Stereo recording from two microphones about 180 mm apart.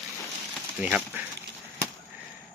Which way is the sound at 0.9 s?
5° right (ahead or behind).